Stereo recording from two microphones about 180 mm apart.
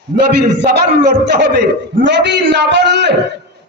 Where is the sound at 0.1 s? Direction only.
45° right (ahead or behind).